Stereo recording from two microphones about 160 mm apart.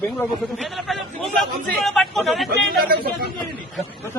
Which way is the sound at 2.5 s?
75° right (ahead or behind).